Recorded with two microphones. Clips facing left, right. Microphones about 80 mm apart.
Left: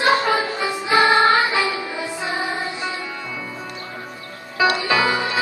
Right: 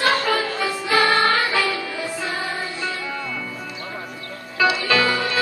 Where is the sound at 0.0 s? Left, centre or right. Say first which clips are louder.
Left 2 dB; centre.